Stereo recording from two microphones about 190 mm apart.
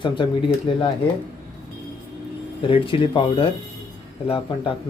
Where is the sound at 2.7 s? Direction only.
25° left (ahead or behind).